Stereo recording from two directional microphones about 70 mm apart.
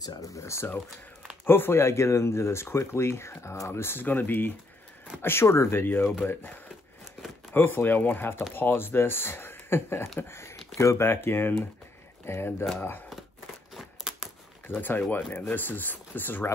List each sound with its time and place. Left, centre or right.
0.0 s speech: left
1.4 s speech: left
7.5 s speech: left
13.7 s a sound: centre
14.8 s speech: left